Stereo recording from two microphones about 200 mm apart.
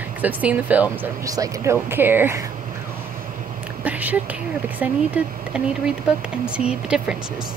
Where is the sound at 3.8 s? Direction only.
10° right (ahead or behind).